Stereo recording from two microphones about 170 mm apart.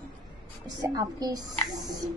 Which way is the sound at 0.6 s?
25° right (ahead or behind).